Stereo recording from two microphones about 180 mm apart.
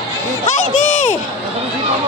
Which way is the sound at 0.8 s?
40° left (ahead or behind).